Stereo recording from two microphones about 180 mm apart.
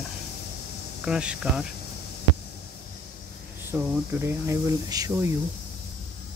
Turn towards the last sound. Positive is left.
turn(degrees=-20)  # may be behind; listen again after turning